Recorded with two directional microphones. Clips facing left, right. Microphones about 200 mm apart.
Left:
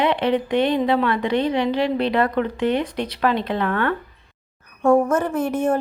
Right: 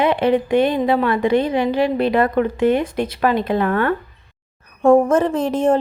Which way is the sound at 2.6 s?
50° right (ahead or behind).